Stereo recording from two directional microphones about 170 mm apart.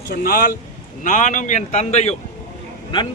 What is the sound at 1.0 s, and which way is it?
Speech, 45° left (ahead or behind).